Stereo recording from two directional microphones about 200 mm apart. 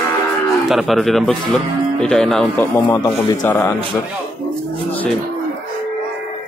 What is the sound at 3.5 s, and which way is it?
Speech, 10° left (ahead or behind).